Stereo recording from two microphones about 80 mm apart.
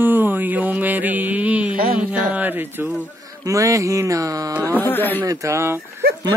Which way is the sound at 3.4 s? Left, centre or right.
Right.